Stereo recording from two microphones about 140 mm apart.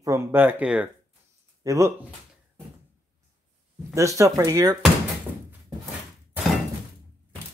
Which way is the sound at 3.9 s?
20° right (ahead or behind).